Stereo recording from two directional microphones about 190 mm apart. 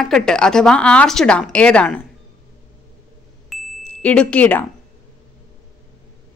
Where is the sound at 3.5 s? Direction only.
5° left (ahead or behind).